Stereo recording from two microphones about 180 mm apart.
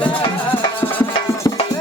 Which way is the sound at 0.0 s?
30° left (ahead or behind).